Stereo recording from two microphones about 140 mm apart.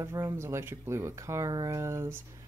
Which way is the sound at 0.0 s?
20° right (ahead or behind).